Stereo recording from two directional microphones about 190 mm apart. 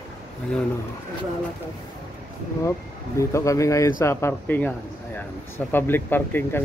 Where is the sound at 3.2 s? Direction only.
15° left (ahead or behind).